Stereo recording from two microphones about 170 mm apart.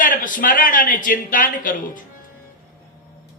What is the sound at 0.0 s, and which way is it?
A man's voice, 55° left (ahead or behind).